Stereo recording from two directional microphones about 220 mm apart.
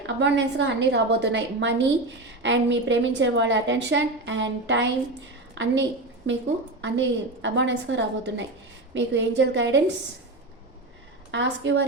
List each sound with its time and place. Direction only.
0.2 s a woman's voice: 55° right (ahead or behind)
6.8 s a woman's voice: 55° right (ahead or behind)
11.3 s a woman's voice: 55° right (ahead or behind)